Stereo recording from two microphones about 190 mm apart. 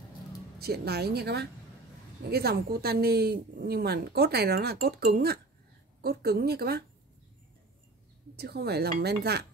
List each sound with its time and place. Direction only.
0.6 s speech: 55° right (ahead or behind)
8.4 s speech: 55° right (ahead or behind)